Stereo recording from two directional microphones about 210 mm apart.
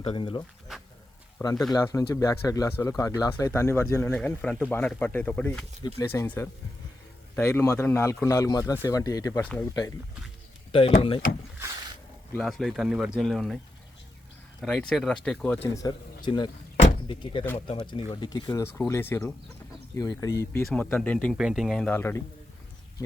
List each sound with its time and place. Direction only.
0.0 s speech: 25° left (ahead or behind)
0.7 s a sound: centre (ahead or behind)
1.4 s speech: 15° left (ahead or behind)
10.7 s speech: 25° left (ahead or behind)
12.3 s speech: centre (ahead or behind)
14.6 s speech: 5° left (ahead or behind)